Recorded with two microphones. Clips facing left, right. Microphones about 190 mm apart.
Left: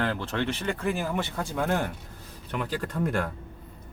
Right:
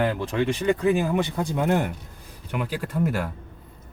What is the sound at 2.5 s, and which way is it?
Speech, 10° right (ahead or behind).